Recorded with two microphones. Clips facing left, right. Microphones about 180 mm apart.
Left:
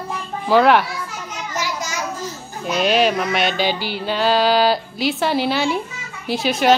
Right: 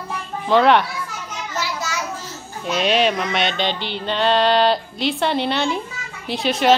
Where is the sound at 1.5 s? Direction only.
15° left (ahead or behind).